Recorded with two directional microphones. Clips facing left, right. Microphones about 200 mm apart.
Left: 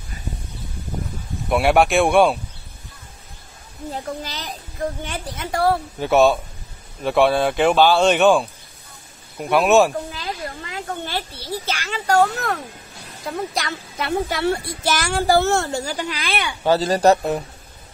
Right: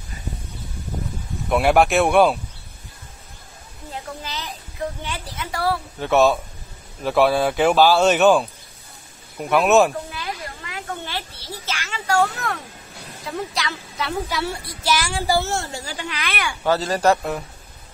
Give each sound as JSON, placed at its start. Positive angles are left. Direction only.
{"t": 1.5, "sound": "a man's voice", "side_deg": 0}
{"t": 3.9, "sound": "a woman's voice", "side_deg": 40}
{"t": 5.9, "sound": "a man's voice", "side_deg": 0}
{"t": 10.6, "sound": "a woman's voice", "side_deg": 35}